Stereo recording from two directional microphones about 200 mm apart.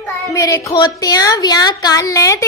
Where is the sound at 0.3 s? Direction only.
15° left (ahead or behind).